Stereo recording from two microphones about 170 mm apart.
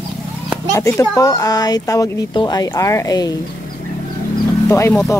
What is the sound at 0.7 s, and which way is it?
Speech, 15° left (ahead or behind).